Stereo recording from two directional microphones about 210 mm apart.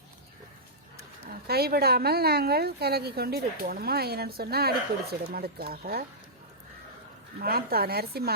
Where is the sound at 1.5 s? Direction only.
50° right (ahead or behind).